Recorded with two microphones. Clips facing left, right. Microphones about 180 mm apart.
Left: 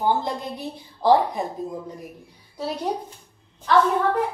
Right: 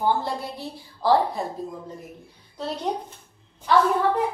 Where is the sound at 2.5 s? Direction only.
5° left (ahead or behind).